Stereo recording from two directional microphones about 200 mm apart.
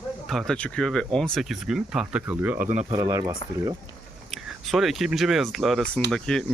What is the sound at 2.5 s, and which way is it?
Speech, 40° right (ahead or behind).